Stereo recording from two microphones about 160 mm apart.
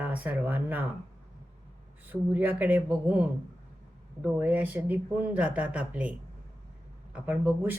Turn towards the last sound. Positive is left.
turn(degrees=-10)  # may be behind; listen again after turning